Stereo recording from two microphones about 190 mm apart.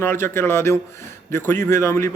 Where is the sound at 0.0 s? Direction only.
10° left (ahead or behind).